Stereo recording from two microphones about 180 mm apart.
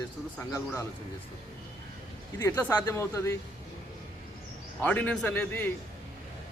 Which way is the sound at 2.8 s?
15° left (ahead or behind).